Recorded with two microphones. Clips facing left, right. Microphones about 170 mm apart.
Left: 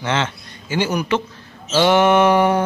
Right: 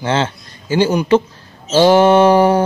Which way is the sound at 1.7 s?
30° right (ahead or behind).